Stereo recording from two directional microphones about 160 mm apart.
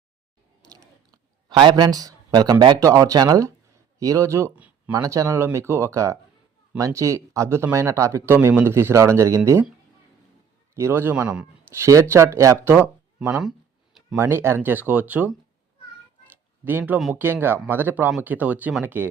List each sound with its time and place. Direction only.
0.8 s a man's voice: 25° right (ahead or behind)
10.8 s speech: 15° right (ahead or behind)
16.6 s speech: 10° right (ahead or behind)